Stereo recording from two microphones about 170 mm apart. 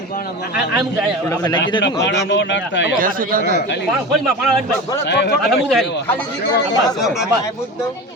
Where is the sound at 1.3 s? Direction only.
25° left (ahead or behind).